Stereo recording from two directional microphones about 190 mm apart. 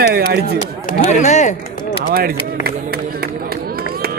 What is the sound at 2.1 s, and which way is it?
Speech, 55° right (ahead or behind).